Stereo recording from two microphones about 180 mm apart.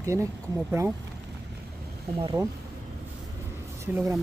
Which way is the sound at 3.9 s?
10° right (ahead or behind).